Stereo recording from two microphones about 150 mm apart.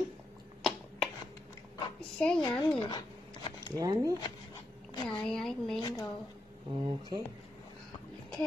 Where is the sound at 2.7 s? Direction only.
30° left (ahead or behind).